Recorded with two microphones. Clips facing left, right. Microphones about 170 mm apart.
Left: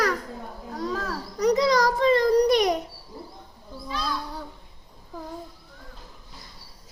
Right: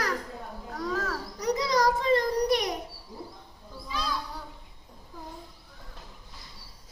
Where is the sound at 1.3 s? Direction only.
85° left.